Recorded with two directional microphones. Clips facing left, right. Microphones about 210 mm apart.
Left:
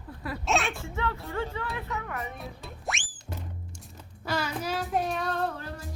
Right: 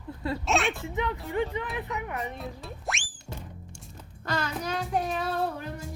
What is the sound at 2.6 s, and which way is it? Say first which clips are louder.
Music: right 1 dB; centre (ahead or behind).